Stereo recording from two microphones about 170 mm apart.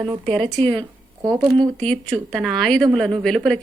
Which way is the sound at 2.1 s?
Centre (ahead or behind).